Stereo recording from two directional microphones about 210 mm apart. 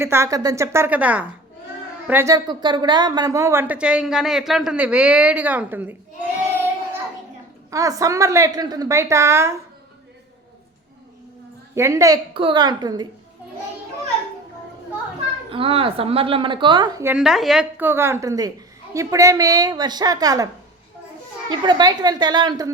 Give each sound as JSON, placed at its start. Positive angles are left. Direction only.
{"t": 0.0, "sound": "a woman's voice", "side_deg": -10}
{"t": 7.7, "sound": "a woman's voice", "side_deg": -15}
{"t": 11.7, "sound": "a woman's voice", "side_deg": -15}
{"t": 15.4, "sound": "a woman's voice", "side_deg": -25}
{"t": 21.5, "sound": "a woman's voice", "side_deg": -20}